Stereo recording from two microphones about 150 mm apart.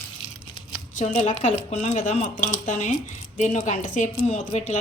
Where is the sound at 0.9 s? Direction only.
50° left (ahead or behind).